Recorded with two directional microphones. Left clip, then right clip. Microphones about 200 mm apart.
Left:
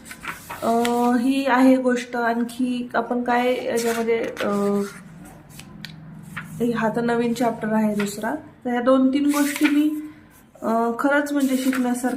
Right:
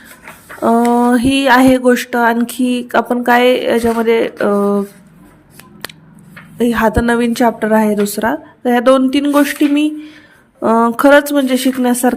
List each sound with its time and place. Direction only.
0.6 s speech: 40° right (ahead or behind)
6.6 s speech: 35° right (ahead or behind)
10.6 s speech: 45° right (ahead or behind)